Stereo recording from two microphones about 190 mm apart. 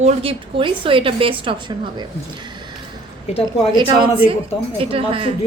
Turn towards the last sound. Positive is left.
turn(degrees=-30)  # may be behind; listen again after turning